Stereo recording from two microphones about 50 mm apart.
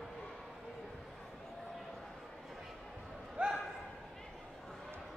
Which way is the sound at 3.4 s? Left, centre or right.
Right.